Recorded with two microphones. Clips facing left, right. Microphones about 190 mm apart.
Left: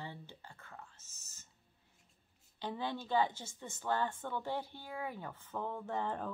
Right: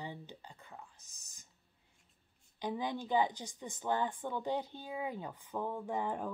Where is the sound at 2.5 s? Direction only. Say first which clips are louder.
Right 2 dB; 15° right (ahead or behind).